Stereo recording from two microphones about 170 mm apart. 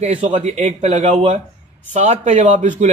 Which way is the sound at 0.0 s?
45° right (ahead or behind).